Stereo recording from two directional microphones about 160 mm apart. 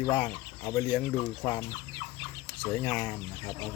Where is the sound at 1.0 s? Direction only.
25° left (ahead or behind).